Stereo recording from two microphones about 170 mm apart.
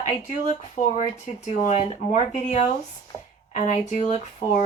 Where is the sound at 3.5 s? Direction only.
45° left (ahead or behind).